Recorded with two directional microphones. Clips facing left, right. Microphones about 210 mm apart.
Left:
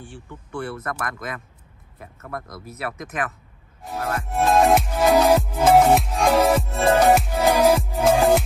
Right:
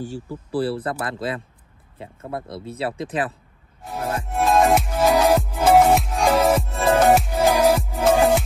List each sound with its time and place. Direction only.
0.0 s speech: 40° right (ahead or behind)
4.2 s music: centre (ahead or behind)